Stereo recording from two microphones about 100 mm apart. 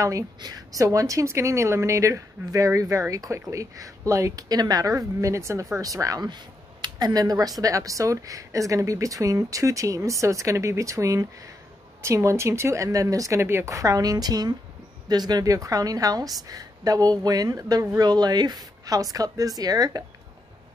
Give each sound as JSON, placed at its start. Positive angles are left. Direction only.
{"t": 0.0, "sound": "a woman's voice", "side_deg": -35}